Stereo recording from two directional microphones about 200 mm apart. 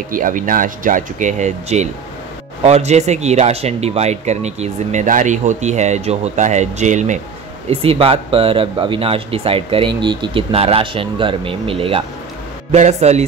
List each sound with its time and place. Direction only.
0.1 s speech: 40° right (ahead or behind)